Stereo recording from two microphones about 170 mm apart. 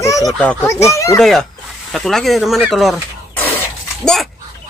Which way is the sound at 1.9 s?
Centre (ahead or behind).